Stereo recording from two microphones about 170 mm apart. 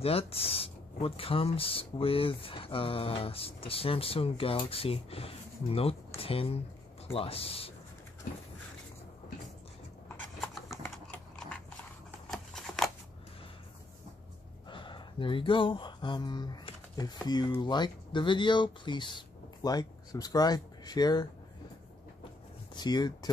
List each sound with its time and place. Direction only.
0.0 s speech: 35° left (ahead or behind)
10.7 s typing: 10° left (ahead or behind)
12.3 s scissors: centre (ahead or behind)
14.7 s speech: 30° left (ahead or behind)
22.8 s speech: 25° left (ahead or behind)